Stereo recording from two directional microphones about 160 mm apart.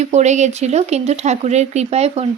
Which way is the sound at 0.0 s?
45° right (ahead or behind).